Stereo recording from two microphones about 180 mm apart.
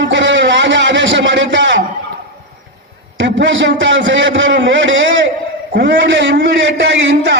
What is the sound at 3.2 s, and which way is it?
A man's voice, 90° right.